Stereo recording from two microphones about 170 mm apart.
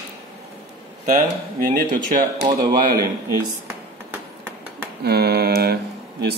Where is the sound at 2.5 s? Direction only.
25° right (ahead or behind).